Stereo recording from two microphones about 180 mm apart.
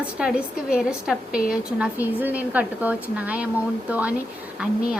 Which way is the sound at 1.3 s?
55° left (ahead or behind).